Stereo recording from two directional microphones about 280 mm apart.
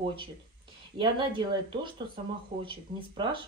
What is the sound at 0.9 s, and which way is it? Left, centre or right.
Speech, centre.